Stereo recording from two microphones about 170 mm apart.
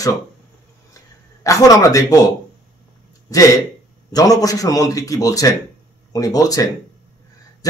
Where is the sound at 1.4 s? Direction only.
20° left (ahead or behind).